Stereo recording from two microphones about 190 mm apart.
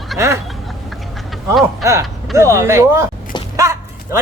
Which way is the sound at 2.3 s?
15° right (ahead or behind).